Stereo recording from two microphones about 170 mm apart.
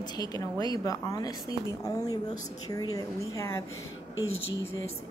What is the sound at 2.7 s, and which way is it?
Speech, 20° left (ahead or behind).